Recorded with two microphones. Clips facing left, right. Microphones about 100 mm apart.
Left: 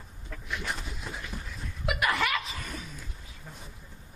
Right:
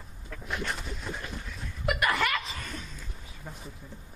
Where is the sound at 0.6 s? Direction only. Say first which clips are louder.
Right 1 dB; centre (ahead or behind).